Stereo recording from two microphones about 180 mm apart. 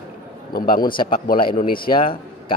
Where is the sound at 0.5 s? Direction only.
55° left (ahead or behind).